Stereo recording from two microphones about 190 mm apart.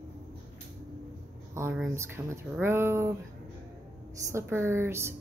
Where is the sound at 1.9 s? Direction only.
15° right (ahead or behind).